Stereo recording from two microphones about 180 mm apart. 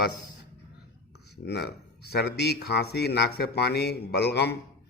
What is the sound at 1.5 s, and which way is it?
A man's voice, 65° left (ahead or behind).